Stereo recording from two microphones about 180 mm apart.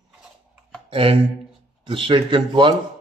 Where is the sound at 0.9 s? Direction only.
30° right (ahead or behind).